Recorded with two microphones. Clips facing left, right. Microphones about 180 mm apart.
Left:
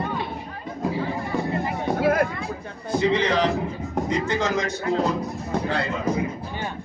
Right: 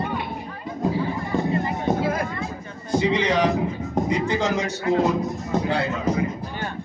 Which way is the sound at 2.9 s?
15° right (ahead or behind).